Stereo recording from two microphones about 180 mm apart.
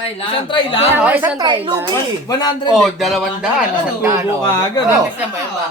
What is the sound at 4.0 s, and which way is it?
Speech, 15° right (ahead or behind).